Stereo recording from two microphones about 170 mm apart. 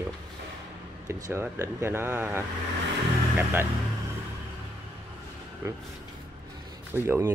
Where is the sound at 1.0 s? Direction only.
15° right (ahead or behind).